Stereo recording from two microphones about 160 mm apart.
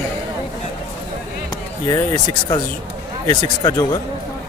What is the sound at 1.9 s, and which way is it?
Speech, 25° left (ahead or behind).